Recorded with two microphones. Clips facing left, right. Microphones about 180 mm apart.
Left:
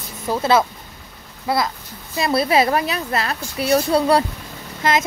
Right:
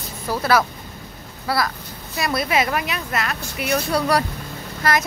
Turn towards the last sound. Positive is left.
turn(degrees=20)  # may be behind; listen again after turning